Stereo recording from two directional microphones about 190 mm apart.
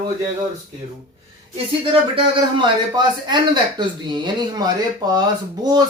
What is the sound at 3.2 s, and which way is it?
Speech, 25° right (ahead or behind).